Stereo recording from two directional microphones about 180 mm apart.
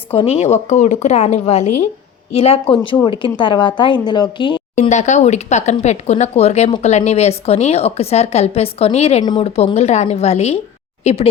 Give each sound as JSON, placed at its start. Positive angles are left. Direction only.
{"t": 0.1, "sound": "a woman's voice", "side_deg": 35}
{"t": 4.7, "sound": "a woman's voice", "side_deg": 40}